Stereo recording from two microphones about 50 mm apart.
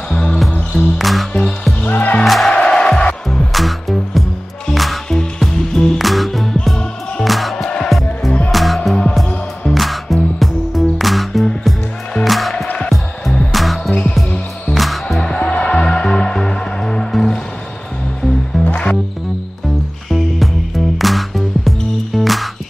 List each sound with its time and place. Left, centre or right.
0.1 s music: centre
0.7 s music: centre
1.9 s music: left
2.2 s music: centre
2.5 s music: centre
3.5 s music: centre
5.7 s music: centre
5.9 s music: centre
7.5 s music: centre
8.5 s music: centre
15.1 s music: centre
18.7 s music: left
20.1 s music: centre